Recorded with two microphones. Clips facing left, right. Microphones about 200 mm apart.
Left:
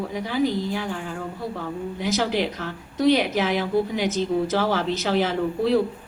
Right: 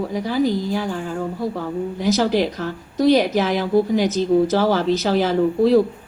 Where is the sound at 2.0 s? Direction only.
40° right (ahead or behind).